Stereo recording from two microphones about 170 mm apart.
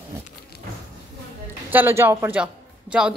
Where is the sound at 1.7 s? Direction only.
15° right (ahead or behind).